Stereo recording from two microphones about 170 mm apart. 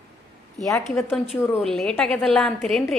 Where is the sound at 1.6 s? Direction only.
5° left (ahead or behind).